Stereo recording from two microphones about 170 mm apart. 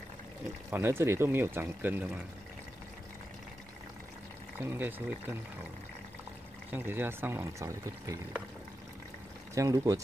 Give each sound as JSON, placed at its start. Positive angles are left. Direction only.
{"t": 0.7, "sound": "speech", "side_deg": -15}
{"t": 4.6, "sound": "speech", "side_deg": -10}
{"t": 6.7, "sound": "speech", "side_deg": -15}
{"t": 9.6, "sound": "speech", "side_deg": -20}